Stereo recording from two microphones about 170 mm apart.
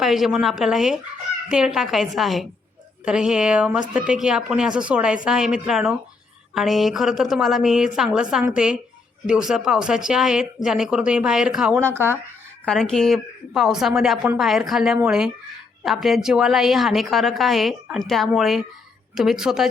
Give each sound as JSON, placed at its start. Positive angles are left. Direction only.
{"t": 0.0, "sound": "a woman's voice", "side_deg": 0}
{"t": 11.8, "sound": "speech", "side_deg": -15}
{"t": 12.6, "sound": "a woman's voice", "side_deg": 5}